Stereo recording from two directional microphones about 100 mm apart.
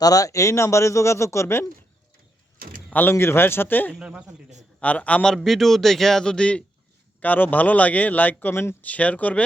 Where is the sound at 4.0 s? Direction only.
10° right (ahead or behind).